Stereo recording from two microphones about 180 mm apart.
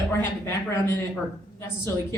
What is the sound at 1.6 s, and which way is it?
Speech, 15° left (ahead or behind).